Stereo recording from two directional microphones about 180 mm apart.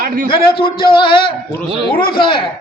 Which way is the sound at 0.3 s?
30° left (ahead or behind).